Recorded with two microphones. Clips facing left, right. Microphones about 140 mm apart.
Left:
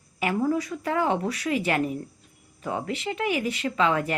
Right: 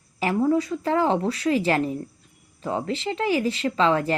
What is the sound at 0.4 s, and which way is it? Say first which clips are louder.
A woman's voice: right 4 dB; 25° right (ahead or behind).